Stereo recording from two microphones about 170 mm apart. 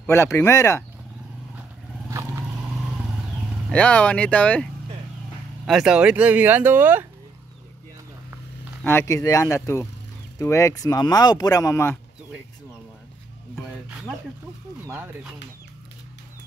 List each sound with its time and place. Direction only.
0.0 s speech: 15° left (ahead or behind)
2.0 s vehicle: 15° right (ahead or behind)
3.7 s speech: 5° left (ahead or behind)
5.7 s speech: 5° right (ahead or behind)
8.8 s speech: 15° left (ahead or behind)
13.8 s a sound: 5° right (ahead or behind)